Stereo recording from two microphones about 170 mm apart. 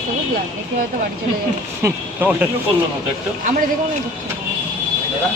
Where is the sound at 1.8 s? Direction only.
10° right (ahead or behind).